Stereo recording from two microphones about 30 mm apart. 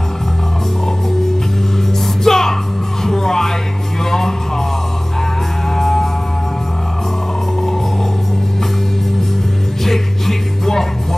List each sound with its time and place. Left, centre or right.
2.2 s music: centre
5.8 s music: centre
9.8 s music: centre